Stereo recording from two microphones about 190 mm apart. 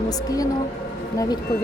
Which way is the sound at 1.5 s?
25° left (ahead or behind).